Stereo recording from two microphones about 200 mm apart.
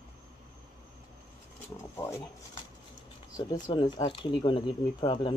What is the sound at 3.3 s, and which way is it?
Speech, 20° left (ahead or behind).